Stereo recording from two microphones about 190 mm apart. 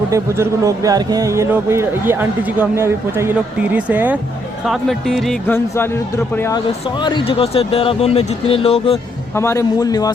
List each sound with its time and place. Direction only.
0.1 s speech: 15° right (ahead or behind); by 5.5 s centre (ahead or behind)
5.5 s a man's voice: 15° left (ahead or behind)
6.9 s speech: 25° left (ahead or behind)
9.3 s a man's voice: 15° left (ahead or behind)